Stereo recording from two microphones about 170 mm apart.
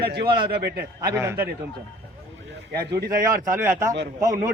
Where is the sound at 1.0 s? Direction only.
15° right (ahead or behind).